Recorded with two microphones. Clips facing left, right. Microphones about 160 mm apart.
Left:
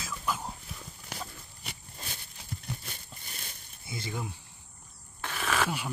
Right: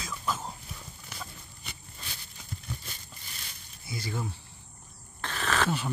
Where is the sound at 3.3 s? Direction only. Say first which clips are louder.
Left 1 dB; 45° left (ahead or behind).